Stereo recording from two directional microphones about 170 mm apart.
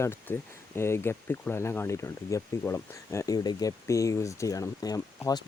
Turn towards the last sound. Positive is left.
turn(degrees=20)  # may be behind; listen again after turning